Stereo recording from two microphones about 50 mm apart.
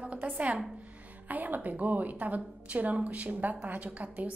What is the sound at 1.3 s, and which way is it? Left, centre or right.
A woman's voice, right.